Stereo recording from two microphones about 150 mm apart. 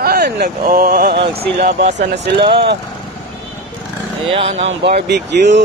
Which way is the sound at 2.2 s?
90° right.